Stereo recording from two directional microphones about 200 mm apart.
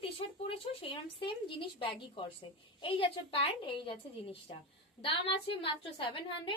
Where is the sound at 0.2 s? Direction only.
25° left (ahead or behind).